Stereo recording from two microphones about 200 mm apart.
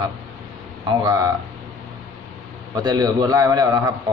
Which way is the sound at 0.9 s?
20° right (ahead or behind).